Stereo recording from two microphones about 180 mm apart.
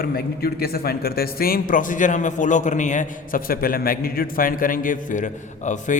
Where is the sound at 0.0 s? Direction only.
60° left (ahead or behind).